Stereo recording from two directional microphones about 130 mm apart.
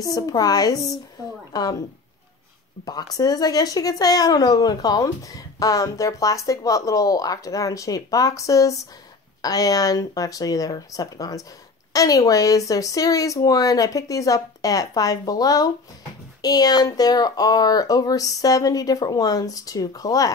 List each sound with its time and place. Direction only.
0.0 s speech: 30° left (ahead or behind)
2.8 s speech: 30° left (ahead or behind)